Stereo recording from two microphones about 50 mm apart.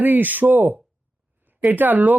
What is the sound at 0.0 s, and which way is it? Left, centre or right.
Speech, right.